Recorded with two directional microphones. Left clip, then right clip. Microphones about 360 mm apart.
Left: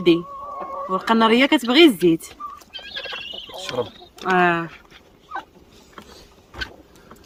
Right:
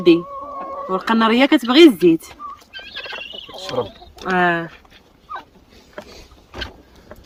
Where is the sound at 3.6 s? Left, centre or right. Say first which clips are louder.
Right 3 dB; centre.